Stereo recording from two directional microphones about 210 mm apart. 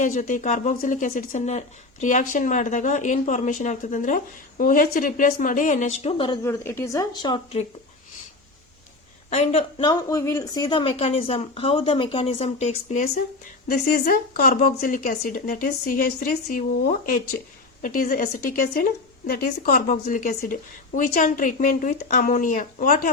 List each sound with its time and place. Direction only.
0.0 s speech: 35° left (ahead or behind); by 7.6 s 20° left (ahead or behind)
9.3 s a woman's voice: 30° left (ahead or behind)
9.9 s a woman's voice: 15° left (ahead or behind); by 23.0 s 40° left (ahead or behind)